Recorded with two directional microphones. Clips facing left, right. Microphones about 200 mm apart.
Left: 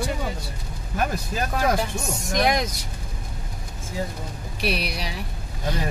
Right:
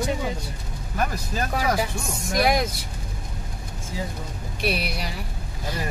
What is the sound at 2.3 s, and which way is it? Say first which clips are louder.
Speech: right 1 dB; 5° right (ahead or behind).